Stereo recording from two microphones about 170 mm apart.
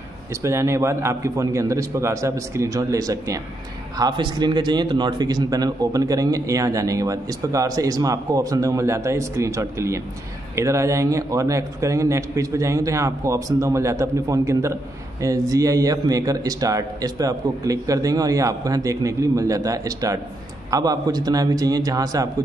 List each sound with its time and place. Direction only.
0.3 s a man's voice: 15° right (ahead or behind)